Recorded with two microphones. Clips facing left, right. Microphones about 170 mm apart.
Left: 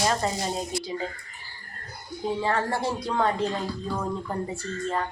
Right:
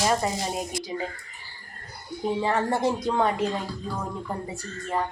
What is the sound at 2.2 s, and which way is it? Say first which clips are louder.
Speech: right 1 dB; 20° right (ahead or behind).